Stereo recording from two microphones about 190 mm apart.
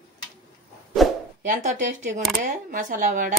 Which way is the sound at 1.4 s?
40° right (ahead or behind).